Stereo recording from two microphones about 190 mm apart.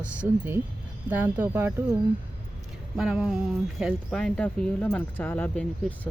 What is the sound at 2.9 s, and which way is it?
Speech, 5° right (ahead or behind).